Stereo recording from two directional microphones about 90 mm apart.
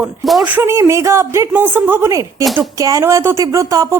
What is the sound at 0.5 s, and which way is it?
Speech, 30° right (ahead or behind).